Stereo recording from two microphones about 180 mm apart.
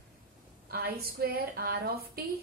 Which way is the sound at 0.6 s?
60° right (ahead or behind).